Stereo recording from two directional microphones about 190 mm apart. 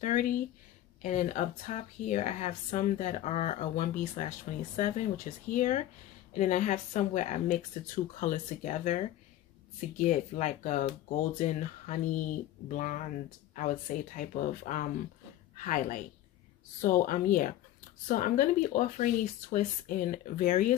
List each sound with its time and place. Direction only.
0.0 s speech: 45° left (ahead or behind)
20.1 s speech: 45° left (ahead or behind)